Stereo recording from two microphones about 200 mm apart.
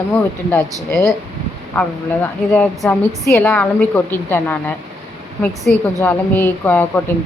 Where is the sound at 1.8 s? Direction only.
10° left (ahead or behind).